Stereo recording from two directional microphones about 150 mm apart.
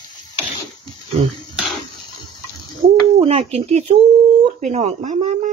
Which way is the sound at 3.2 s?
40° right (ahead or behind).